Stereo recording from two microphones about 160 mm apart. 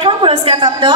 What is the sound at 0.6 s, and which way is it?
Speech, 25° right (ahead or behind).